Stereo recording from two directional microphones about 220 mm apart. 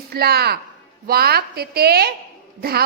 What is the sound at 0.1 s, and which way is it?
A woman's voice, 45° right (ahead or behind).